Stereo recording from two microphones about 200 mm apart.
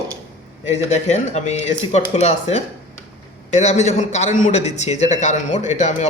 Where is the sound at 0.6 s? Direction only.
35° left (ahead or behind).